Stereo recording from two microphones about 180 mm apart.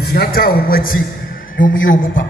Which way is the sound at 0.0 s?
60° left (ahead or behind).